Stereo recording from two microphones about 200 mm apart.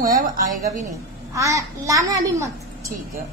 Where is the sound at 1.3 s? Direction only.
15° right (ahead or behind).